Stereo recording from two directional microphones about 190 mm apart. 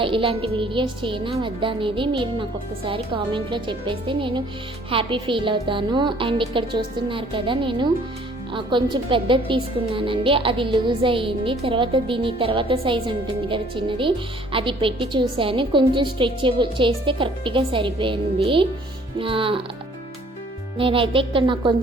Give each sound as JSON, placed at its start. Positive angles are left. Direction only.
{"t": 0.0, "sound": "speech", "side_deg": -25}
{"t": 20.7, "sound": "speech", "side_deg": -30}